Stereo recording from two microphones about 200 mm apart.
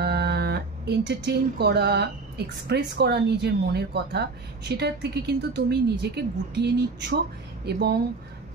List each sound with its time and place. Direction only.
0.0 s speech: 55° right (ahead or behind)